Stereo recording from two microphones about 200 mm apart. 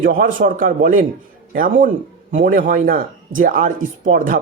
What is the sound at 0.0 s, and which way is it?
Speech, 45° right (ahead or behind).